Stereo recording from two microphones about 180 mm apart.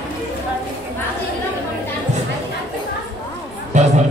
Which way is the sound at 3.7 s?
40° right (ahead or behind).